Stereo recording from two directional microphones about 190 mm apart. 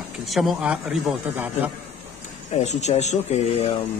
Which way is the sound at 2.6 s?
35° left (ahead or behind).